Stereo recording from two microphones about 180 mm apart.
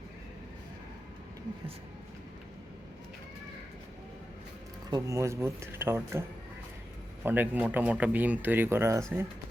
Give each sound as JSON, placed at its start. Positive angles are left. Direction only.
{"t": 4.9, "sound": "speech", "side_deg": -20}
{"t": 7.3, "sound": "speech", "side_deg": -10}